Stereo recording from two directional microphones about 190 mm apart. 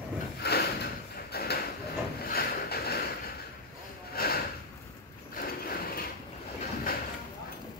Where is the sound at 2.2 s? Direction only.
55° left (ahead or behind).